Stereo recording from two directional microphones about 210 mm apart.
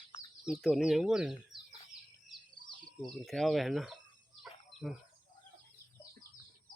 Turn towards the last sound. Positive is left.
turn(degrees=0)  # may be behind; listen again after turning